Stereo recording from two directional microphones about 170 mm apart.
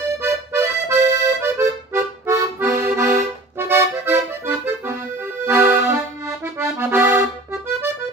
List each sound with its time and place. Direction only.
0.0 s music: 15° right (ahead or behind)
3.2 s accordion: 15° right (ahead or behind)